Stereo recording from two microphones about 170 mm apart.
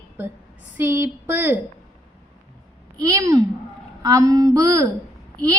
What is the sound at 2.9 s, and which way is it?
A woman's voice, 20° right (ahead or behind).